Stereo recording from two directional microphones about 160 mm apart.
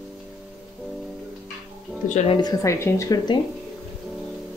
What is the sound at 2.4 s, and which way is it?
Speech, 20° left (ahead or behind).